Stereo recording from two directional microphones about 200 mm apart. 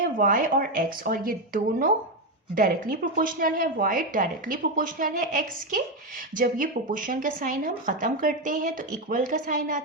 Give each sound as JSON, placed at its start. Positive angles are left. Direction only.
{"t": 0.0, "sound": "speech", "side_deg": -45}